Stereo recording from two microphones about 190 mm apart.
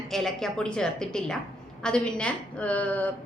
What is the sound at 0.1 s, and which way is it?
A woman's voice, centre (ahead or behind).